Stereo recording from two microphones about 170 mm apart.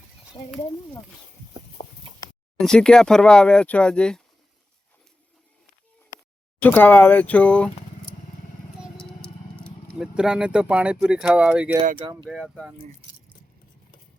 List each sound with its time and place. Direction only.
0.4 s speech: 25° left (ahead or behind)
1.8 s clip-clop: 35° left (ahead or behind)
2.6 s speech: 5° left (ahead or behind)
6.6 s speech: 10° left (ahead or behind)
8.8 s vehicle: 5° left (ahead or behind)
9.6 s speech: 5° right (ahead or behind)